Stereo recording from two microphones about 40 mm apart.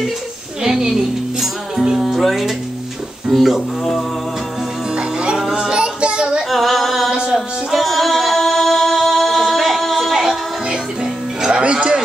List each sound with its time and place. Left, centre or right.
0.7 s a woman's voice: centre
1.8 s music: centre
2.0 s speech: centre
4.9 s music: right
5.4 s music: centre
5.8 s child singing: right
6.5 s a sound: centre
7.1 s music: centre
7.7 s music: centre
11.6 s a sound: right